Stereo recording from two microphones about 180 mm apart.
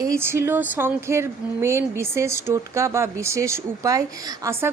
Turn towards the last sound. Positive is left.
turn(degrees=-15)  # may be behind; listen again after turning